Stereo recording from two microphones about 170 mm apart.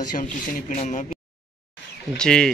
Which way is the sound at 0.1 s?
50° left (ahead or behind).